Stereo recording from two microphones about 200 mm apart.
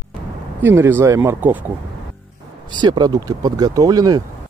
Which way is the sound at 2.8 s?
20° right (ahead or behind).